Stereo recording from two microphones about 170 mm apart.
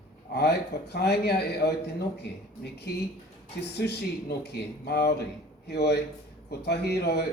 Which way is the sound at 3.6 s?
75° left (ahead or behind).